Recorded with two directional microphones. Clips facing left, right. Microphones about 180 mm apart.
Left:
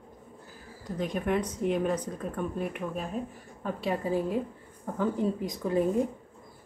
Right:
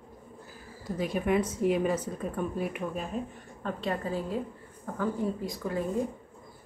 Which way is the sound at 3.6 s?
10° left (ahead or behind).